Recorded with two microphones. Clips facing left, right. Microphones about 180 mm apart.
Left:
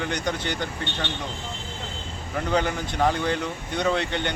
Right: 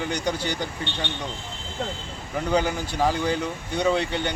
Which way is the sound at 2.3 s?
5° right (ahead or behind).